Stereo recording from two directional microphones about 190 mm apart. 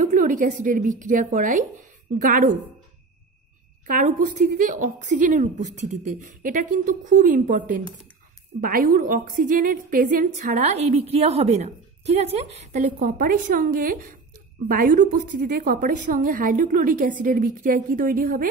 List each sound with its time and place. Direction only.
0.0 s a woman's voice: 45° right (ahead or behind)
3.8 s a woman's voice: 45° right (ahead or behind)